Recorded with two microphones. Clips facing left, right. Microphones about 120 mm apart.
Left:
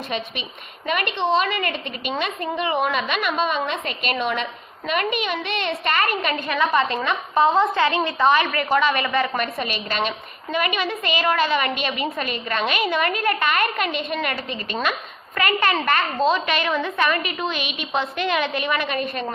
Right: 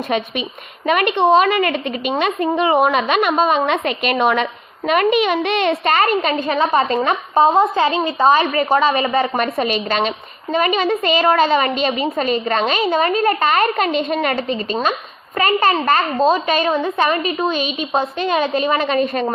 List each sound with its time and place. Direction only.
0.9 s a woman's voice: 50° right (ahead or behind)
7.3 s a woman's voice: 25° right (ahead or behind)
9.6 s a woman's voice: 45° right (ahead or behind)
14.3 s a woman's voice: 25° right (ahead or behind)